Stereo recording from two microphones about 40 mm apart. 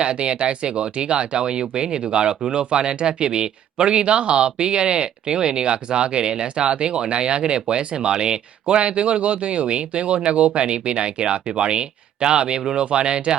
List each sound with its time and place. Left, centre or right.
0.0 s speech: right